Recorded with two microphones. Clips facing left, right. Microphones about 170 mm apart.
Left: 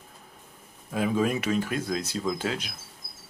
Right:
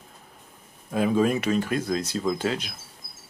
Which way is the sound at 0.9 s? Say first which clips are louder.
Right 4 dB; 30° right (ahead or behind).